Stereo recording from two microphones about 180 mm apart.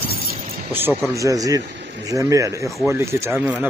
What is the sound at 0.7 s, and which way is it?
Speech, 15° right (ahead or behind).